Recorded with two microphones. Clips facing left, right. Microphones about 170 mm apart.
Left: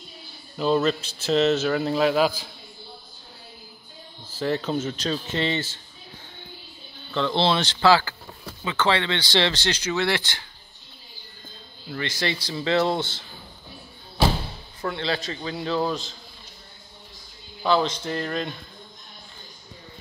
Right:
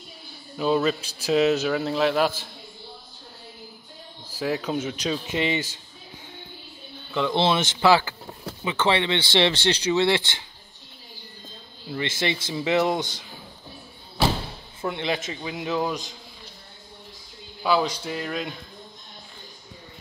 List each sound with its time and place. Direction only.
0.6 s a man's voice: 5° right (ahead or behind)
4.4 s speech: 10° right (ahead or behind)
7.1 s speech: 10° right (ahead or behind)
11.9 s speech: 20° right (ahead or behind)
14.8 s speech: 20° right (ahead or behind)
17.6 s speech: 10° right (ahead or behind)